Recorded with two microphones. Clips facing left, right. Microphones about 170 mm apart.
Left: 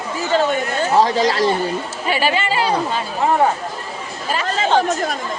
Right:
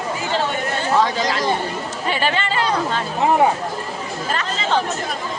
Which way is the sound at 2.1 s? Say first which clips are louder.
Left 3 dB; 10° left (ahead or behind).